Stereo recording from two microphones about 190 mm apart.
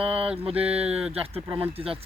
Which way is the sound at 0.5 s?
5° right (ahead or behind).